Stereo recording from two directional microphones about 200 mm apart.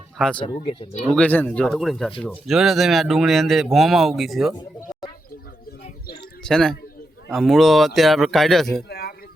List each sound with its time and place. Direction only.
0.3 s speech: 25° left (ahead or behind)
1.1 s speech: 10° left (ahead or behind)
6.4 s speech: 5° left (ahead or behind)
8.9 s a sound: 50° left (ahead or behind)